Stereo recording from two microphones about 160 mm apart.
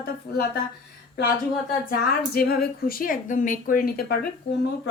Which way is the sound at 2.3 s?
70° left (ahead or behind).